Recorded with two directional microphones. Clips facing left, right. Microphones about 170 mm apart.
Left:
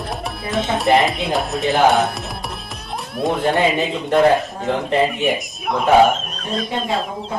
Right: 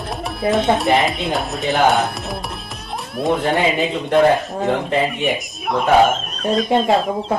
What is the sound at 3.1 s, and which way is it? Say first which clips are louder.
Speech: right 1 dB; centre (ahead or behind).